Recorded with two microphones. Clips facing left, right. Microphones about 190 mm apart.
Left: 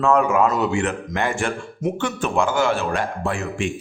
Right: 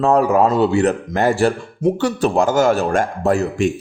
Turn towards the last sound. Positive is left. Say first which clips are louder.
# right 8 dB
turn(degrees=-40)  # may be behind; listen again after turning